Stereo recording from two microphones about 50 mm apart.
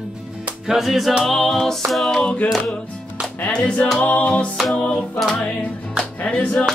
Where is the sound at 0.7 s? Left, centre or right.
Centre.